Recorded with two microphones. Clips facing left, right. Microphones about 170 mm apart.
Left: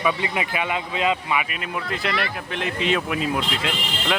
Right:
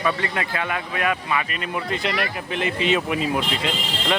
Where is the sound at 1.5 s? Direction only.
Centre (ahead or behind).